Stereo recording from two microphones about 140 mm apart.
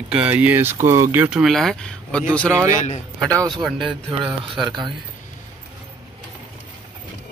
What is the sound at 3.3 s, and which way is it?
Speech, 30° right (ahead or behind).